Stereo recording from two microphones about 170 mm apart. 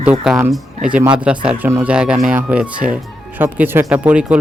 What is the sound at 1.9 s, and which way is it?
Speech, 5° right (ahead or behind).